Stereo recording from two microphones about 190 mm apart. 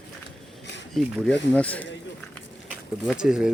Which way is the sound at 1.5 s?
10° left (ahead or behind).